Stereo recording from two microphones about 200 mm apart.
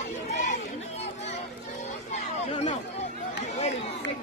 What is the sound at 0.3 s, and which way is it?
Chatter, 40° left (ahead or behind).